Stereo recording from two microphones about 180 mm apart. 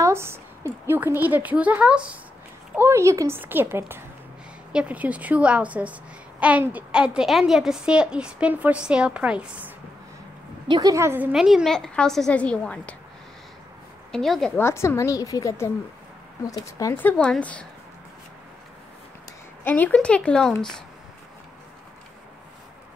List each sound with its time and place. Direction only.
0.0 s a sound: 15° right (ahead or behind)
0.8 s a woman's voice: 10° right (ahead or behind)
10.7 s a woman's voice: 20° right (ahead or behind)
11.3 s a woman's voice: centre (ahead or behind)
14.1 s a woman's voice: centre (ahead or behind)
14.6 s speech: 15° left (ahead or behind)
19.6 s speech: 10° left (ahead or behind)